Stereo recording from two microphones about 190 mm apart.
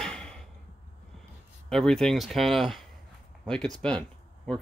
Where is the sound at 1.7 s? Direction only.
Centre (ahead or behind).